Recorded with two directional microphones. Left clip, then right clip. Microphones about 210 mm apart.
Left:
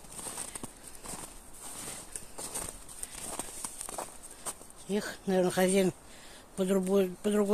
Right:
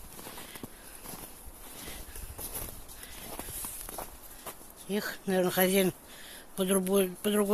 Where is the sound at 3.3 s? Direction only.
10° left (ahead or behind).